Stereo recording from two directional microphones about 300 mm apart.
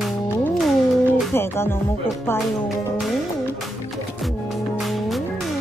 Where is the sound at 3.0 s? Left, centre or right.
Centre.